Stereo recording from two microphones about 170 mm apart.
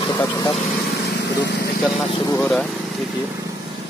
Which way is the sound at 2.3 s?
15° left (ahead or behind).